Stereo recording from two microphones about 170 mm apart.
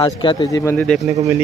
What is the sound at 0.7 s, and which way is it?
Speech, 5° left (ahead or behind).